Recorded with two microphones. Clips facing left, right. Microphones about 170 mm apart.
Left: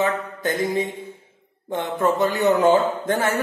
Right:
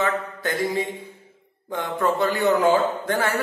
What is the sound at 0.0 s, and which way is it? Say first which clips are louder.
A man's voice: left 2 dB; 20° left (ahead or behind).